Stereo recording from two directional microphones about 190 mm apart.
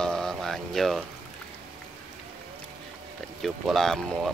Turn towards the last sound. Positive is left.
turn(degrees=5)  # may be behind; listen again after turning